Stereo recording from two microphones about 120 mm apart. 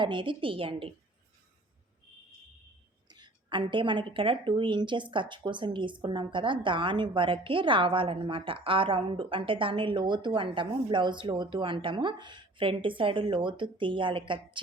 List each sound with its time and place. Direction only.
0.0 s a woman's voice: 40° right (ahead or behind)
3.1 s a woman's voice: 40° right (ahead or behind)